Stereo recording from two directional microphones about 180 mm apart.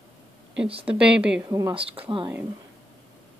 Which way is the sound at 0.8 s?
5° right (ahead or behind).